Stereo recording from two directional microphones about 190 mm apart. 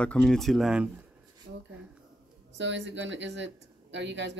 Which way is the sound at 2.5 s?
70° right (ahead or behind).